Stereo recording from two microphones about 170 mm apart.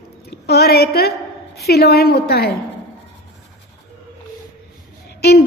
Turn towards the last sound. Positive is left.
turn(degrees=70)  # may be behind; listen again after turning